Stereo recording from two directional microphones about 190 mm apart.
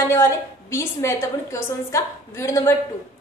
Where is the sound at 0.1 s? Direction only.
15° left (ahead or behind).